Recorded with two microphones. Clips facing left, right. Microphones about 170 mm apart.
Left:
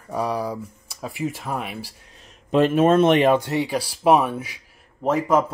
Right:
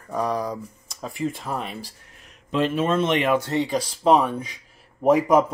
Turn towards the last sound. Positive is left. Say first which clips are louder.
# right 3 dB
turn(degrees=-10)  # may be behind; listen again after turning